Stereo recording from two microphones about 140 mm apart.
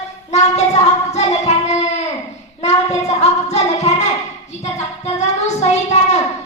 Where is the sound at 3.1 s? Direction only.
55° left (ahead or behind).